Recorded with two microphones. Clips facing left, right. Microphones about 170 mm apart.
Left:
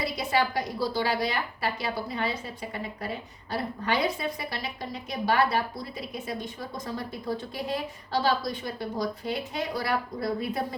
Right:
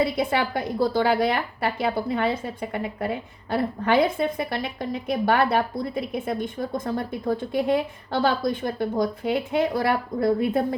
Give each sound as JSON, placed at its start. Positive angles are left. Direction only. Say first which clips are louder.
{"t": 0.0, "sound": "a woman's voice", "louder": "right 4 dB", "side_deg": -55}